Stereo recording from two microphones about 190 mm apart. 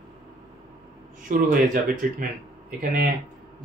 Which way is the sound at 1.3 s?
45° right (ahead or behind).